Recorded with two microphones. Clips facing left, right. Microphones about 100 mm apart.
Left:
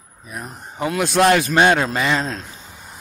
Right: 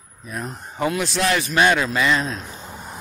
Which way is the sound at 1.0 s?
55° left (ahead or behind).